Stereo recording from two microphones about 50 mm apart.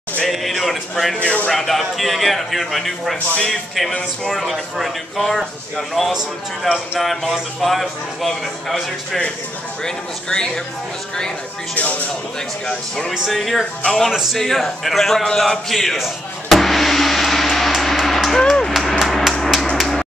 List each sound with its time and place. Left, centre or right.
0.3 s speech: centre
1.2 s speech: left
1.5 s a man's voice: centre
4.3 s a man's voice: centre
9.8 s speech: centre
11.7 s speech: left
12.6 s speech: centre
13.3 s a man's voice: centre
18.0 s a sound: centre
18.7 s hammer: centre